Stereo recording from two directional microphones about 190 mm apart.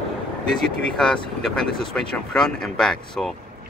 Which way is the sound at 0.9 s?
5° left (ahead or behind).